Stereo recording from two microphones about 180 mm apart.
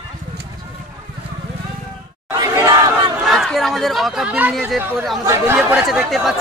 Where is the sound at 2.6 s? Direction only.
20° right (ahead or behind).